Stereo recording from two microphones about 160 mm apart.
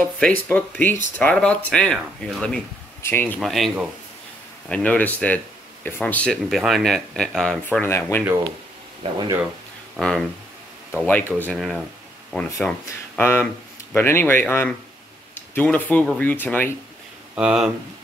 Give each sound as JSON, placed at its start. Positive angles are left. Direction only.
{"t": 0.0, "sound": "speech", "side_deg": 10}
{"t": 3.0, "sound": "a sound", "side_deg": 15}
{"t": 3.3, "sound": "speech", "side_deg": 0}
{"t": 9.0, "sound": "speech", "side_deg": -35}
{"t": 9.9, "sound": "speech", "side_deg": 0}
{"t": 13.2, "sound": "speech", "side_deg": 15}
{"t": 17.4, "sound": "speech", "side_deg": -5}